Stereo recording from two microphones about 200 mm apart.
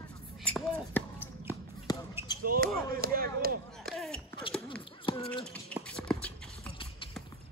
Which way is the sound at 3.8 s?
Centre (ahead or behind).